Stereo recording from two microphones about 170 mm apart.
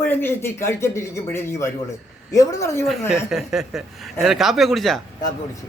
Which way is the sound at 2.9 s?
Centre (ahead or behind).